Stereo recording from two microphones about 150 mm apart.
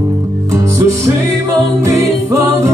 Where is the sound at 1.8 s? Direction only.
20° right (ahead or behind).